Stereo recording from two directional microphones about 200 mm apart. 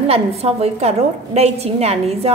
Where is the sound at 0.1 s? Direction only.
30° right (ahead or behind).